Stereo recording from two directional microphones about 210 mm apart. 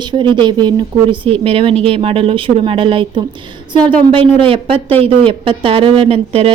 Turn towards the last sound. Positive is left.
turn(degrees=-25)  # may be behind; listen again after turning